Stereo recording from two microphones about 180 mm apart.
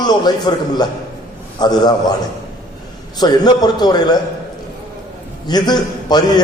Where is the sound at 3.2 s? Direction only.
25° left (ahead or behind).